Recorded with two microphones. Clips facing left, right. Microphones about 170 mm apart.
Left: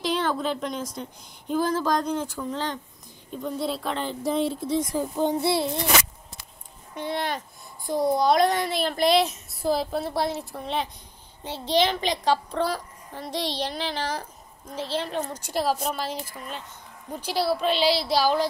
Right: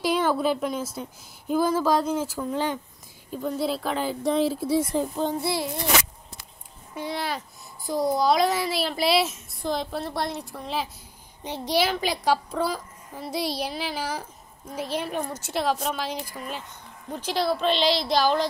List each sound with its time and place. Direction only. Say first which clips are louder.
0.0 s a woman's voice: right 3 dB; 10° right (ahead or behind)
4.9 s a child's voice: left 1 dB; 10° left (ahead or behind)
7.0 s a child's voice: left 1 dB; 5° right (ahead or behind)
11.4 s a woman's voice: left 1 dB; 15° right (ahead or behind)
15.4 s a child's voice: even; centre (ahead or behind)
17.1 s a woman's voice: even; 10° left (ahead or behind)